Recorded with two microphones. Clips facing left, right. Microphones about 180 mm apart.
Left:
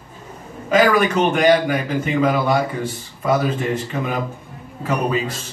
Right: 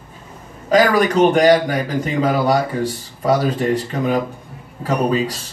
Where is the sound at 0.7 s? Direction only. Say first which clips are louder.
Right 1 dB; 35° right (ahead or behind).